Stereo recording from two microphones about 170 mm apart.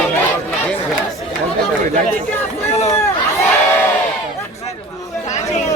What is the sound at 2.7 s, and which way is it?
Speech, 40° left (ahead or behind).